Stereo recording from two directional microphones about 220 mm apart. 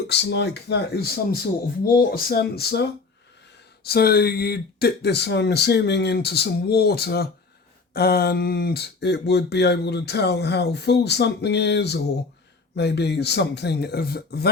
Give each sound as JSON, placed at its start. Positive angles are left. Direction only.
{"t": 0.1, "sound": "speech", "side_deg": 50}
{"t": 3.8, "sound": "speech", "side_deg": 45}